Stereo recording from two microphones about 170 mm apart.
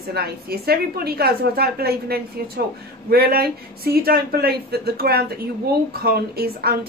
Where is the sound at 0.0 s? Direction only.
65° right (ahead or behind).